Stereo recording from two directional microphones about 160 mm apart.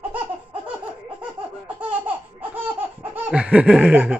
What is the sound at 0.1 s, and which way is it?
Laughter, 10° right (ahead or behind).